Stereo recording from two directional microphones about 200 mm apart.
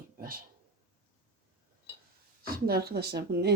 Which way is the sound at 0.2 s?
45° right (ahead or behind).